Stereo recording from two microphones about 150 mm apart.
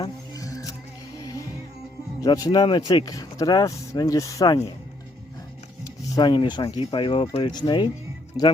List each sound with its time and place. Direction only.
0.0 s music: 25° left (ahead or behind)
2.2 s speech: 25° left (ahead or behind)
6.1 s speech: 30° left (ahead or behind)